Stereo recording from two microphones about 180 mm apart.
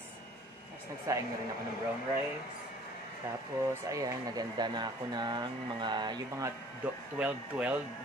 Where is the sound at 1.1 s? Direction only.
15° right (ahead or behind).